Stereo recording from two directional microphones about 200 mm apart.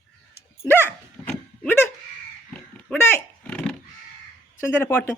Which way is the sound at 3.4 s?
5° left (ahead or behind).